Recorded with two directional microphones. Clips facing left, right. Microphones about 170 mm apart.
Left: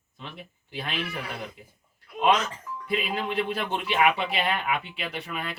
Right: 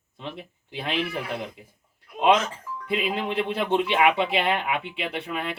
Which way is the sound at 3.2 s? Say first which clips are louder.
Right 2 dB; 25° right (ahead or behind).